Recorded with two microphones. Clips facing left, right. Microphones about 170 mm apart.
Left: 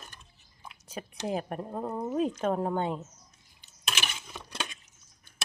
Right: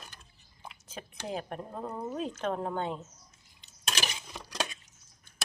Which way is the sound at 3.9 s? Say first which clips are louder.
Right 1 dB; 35° right (ahead or behind).